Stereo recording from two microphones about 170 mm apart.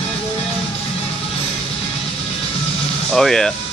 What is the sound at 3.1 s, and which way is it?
Speech, centre (ahead or behind).